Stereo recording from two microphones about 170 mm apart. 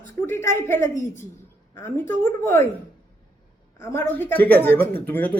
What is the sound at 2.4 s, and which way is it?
Speech, 15° left (ahead or behind).